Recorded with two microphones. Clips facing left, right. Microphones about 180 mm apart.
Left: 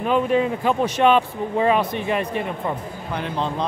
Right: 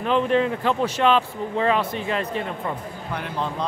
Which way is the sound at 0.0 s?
10° left (ahead or behind).